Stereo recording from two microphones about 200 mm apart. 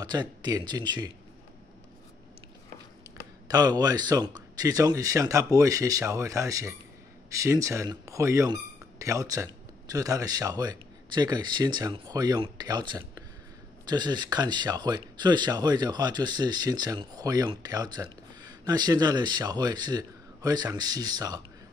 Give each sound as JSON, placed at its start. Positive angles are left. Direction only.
{"t": 0.0, "sound": "speech", "side_deg": -20}
{"t": 3.4, "sound": "speech", "side_deg": -20}